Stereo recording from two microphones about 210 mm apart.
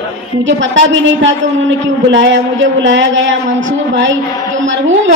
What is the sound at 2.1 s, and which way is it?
A woman's voice, 60° right (ahead or behind).